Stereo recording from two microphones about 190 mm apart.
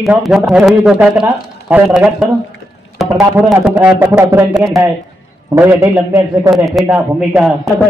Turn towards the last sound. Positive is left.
turn(degrees=0)  # may be behind; listen again after turning